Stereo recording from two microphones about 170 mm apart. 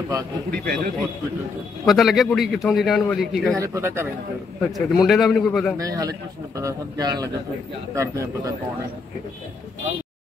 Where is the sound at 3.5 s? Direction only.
20° right (ahead or behind).